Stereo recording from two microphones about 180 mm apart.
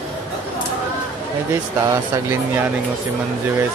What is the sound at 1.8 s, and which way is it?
Speech, 15° right (ahead or behind).